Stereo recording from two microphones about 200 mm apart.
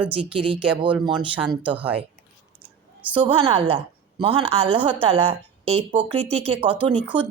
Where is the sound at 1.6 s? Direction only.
5° right (ahead or behind).